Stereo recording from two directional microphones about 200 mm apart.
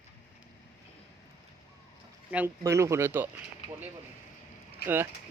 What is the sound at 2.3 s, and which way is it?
Speech, 10° right (ahead or behind).